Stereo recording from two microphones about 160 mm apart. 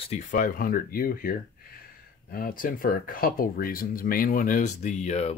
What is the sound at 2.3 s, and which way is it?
Speech, 65° left (ahead or behind).